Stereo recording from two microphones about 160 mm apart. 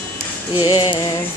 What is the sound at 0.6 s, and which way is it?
Music, 20° left (ahead or behind).